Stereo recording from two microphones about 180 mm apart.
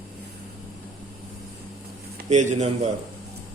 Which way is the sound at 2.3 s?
40° right (ahead or behind).